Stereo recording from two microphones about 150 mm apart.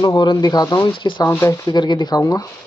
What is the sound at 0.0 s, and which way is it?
Speech, 30° left (ahead or behind).